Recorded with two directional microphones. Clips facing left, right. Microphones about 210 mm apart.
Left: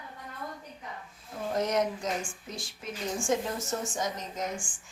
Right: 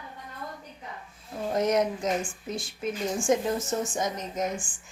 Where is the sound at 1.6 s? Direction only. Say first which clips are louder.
Right 4 dB; 20° right (ahead or behind).